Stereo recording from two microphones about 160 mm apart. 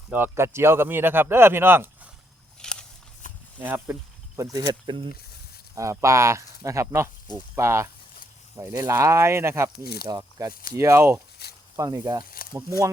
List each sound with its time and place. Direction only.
0.1 s speech: 15° right (ahead or behind)
2.6 s walk: 5° left (ahead or behind)
3.2 s a sound: 55° left (ahead or behind)
3.6 s speech: 10° right (ahead or behind)
4.4 s speech: 20° right (ahead or behind)
9.8 s speech: 75° left (ahead or behind)
10.1 s speech: 20° right (ahead or behind)
10.5 s speech: 60° left (ahead or behind)
10.8 s speech: 15° right (ahead or behind)
11.4 s snake: 90° left
11.8 s speech: 25° right (ahead or behind)
12.2 s snake: 65° left (ahead or behind)